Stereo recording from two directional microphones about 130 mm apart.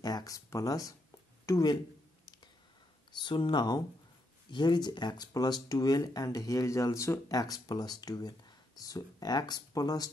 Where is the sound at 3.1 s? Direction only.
35° left (ahead or behind).